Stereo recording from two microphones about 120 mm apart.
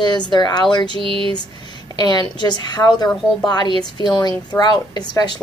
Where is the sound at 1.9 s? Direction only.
35° left (ahead or behind).